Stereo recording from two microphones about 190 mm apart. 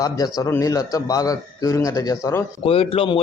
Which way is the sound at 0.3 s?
15° left (ahead or behind).